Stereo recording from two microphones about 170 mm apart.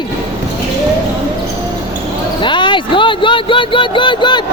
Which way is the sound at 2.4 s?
30° left (ahead or behind).